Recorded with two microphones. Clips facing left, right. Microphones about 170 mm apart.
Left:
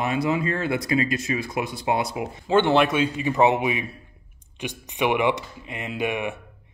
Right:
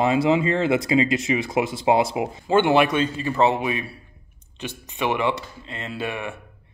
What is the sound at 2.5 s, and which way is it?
Speech, 5° right (ahead or behind).